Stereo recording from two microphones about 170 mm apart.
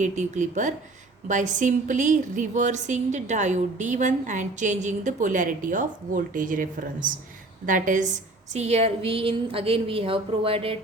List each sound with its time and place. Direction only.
0.0 s a woman's voice: 45° right (ahead or behind)
8.5 s a woman's voice: 40° right (ahead or behind)